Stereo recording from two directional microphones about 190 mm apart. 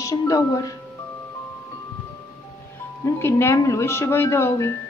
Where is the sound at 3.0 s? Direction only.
15° left (ahead or behind).